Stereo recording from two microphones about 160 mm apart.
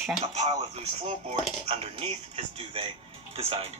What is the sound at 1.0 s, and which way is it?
Speech, 40° right (ahead or behind).